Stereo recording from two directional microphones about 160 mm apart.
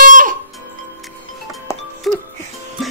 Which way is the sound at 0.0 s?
55° right (ahead or behind).